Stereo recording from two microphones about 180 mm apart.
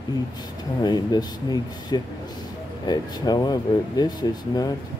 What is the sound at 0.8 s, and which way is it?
Speech, 20° left (ahead or behind).